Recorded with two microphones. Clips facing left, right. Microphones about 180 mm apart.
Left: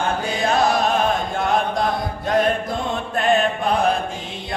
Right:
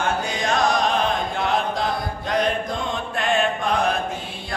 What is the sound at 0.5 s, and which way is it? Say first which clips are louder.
Music: left 2 dB; 5° left (ahead or behind).